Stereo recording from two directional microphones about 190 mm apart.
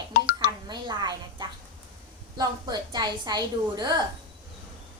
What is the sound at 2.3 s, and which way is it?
A woman's voice, 20° right (ahead or behind).